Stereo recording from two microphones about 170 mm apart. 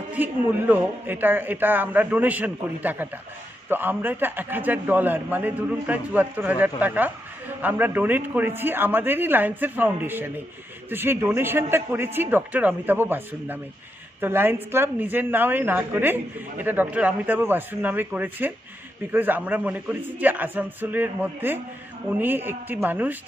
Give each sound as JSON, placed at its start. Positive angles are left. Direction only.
{"t": 0.1, "sound": "a woman's voice", "side_deg": -10}